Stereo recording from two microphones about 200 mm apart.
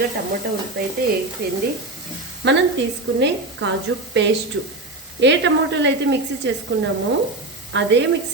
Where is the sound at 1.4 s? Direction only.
50° right (ahead or behind).